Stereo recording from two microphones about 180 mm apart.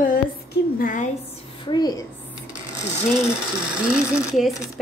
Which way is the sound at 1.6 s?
25° left (ahead or behind).